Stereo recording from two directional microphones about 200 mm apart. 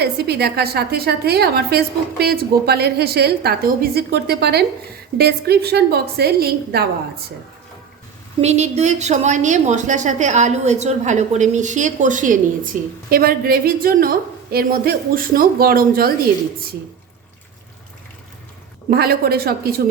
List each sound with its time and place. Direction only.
0.0 s a woman's voice: 55° right (ahead or behind)
8.4 s a woman's voice: 35° right (ahead or behind)
18.9 s a woman's voice: 50° right (ahead or behind)